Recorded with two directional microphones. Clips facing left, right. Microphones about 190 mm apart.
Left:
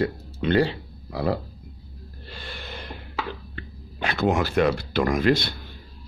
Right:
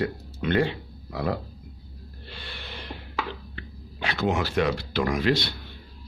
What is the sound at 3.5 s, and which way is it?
Speech, 50° left (ahead or behind).